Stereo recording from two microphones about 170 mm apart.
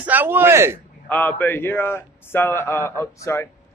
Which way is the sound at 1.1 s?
10° left (ahead or behind).